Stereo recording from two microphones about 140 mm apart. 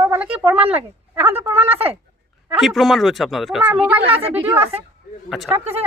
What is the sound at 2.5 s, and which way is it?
Speech, centre (ahead or behind).